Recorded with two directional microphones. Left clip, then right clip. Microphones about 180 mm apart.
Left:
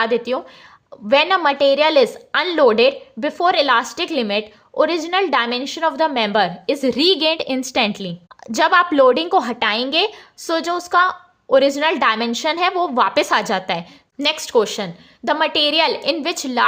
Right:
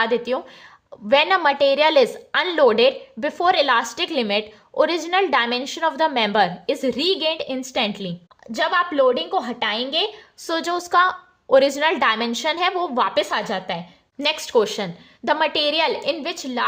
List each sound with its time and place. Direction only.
0.0 s a woman's voice: 15° left (ahead or behind)
8.5 s a woman's voice: 30° left (ahead or behind)
14.2 s a woman's voice: 15° left (ahead or behind)
16.0 s a woman's voice: 30° left (ahead or behind)